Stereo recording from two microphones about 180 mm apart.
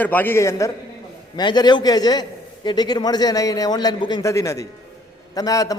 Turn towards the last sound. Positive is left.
turn(degrees=20)  # may be behind; listen again after turning